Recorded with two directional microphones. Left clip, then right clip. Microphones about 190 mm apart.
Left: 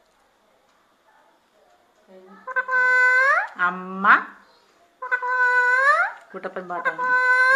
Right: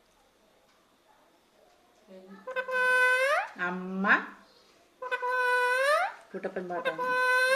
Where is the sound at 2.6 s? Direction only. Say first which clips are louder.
Left 7 dB; 30° right (ahead or behind).